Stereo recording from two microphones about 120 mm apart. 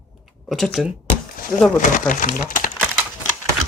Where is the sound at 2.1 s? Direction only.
90° left.